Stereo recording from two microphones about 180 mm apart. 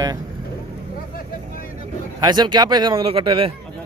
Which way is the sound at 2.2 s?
25° right (ahead or behind).